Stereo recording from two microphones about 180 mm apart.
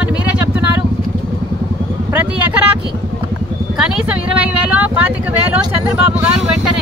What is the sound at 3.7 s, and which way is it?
Speech, 5° right (ahead or behind).